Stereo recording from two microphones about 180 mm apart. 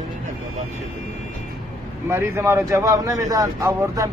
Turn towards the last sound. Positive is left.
turn(degrees=-20)  # may be behind; listen again after turning